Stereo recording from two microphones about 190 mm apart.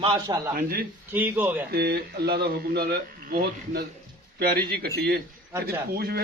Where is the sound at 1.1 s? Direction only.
10° right (ahead or behind).